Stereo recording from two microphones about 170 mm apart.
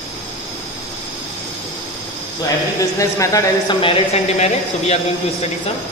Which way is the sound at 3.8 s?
35° left (ahead or behind).